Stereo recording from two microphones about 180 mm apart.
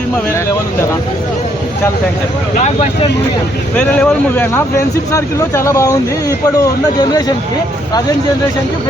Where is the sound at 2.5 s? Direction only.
40° left (ahead or behind).